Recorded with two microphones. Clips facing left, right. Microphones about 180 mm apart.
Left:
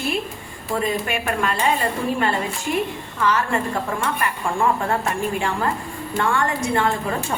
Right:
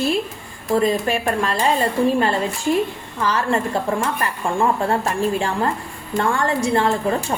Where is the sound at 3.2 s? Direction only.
35° right (ahead or behind).